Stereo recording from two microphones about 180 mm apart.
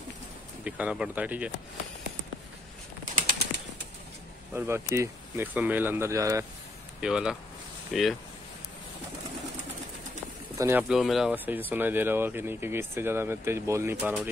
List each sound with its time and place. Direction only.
0.7 s speech: 5° right (ahead or behind)
3.2 s bird flight: 55° right (ahead or behind)
4.6 s speech: 15° right (ahead or behind)
7.0 s speech: 5° right (ahead or behind)
10.6 s speech: 10° right (ahead or behind)